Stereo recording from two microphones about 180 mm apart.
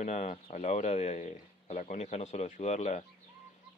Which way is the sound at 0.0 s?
40° left (ahead or behind).